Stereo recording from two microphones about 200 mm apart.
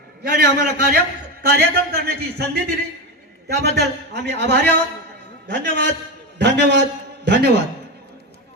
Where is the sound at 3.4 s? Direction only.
55° right (ahead or behind).